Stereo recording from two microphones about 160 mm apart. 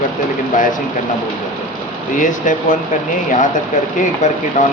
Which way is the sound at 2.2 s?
55° left (ahead or behind).